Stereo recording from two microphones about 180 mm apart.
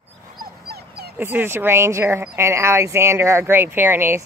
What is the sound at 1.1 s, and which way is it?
Speech, 10° right (ahead or behind).